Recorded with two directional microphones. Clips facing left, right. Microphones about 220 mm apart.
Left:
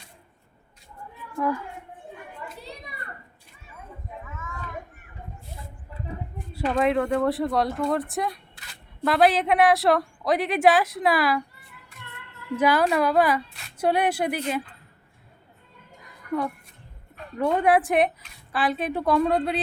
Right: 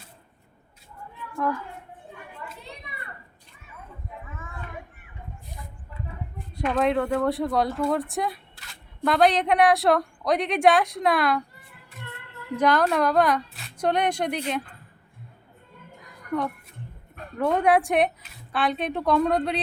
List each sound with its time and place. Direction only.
2.6 s children playing: 40° left (ahead or behind)
6.7 s a woman's voice: centre (ahead or behind)
12.5 s a woman's voice: 5° left (ahead or behind)
16.0 s a sound: centre (ahead or behind)
17.3 s a woman's voice: centre (ahead or behind)